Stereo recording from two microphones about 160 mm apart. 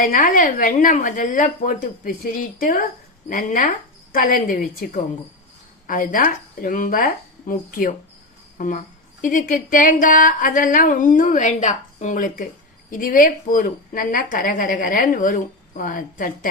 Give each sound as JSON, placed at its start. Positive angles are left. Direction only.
{"t": 0.0, "sound": "speech", "side_deg": 55}